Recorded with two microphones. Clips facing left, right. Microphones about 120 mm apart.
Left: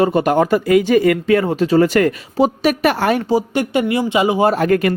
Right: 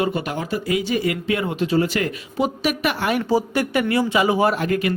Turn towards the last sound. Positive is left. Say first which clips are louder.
# left 6 dB
turn(degrees=50)  # may be behind; listen again after turning